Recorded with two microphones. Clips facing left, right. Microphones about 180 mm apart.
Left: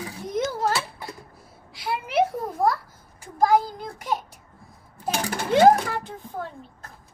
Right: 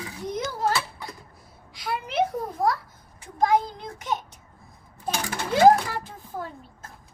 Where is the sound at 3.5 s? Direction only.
5° left (ahead or behind).